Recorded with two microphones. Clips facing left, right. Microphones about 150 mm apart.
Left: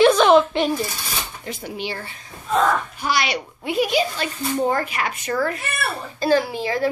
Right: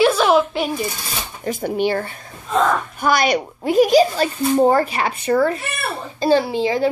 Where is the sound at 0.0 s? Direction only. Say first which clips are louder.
Left 1 dB; 5° right (ahead or behind).